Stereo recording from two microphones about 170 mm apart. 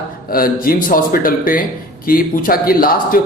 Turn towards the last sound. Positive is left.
turn(degrees=60)  # may be behind; listen again after turning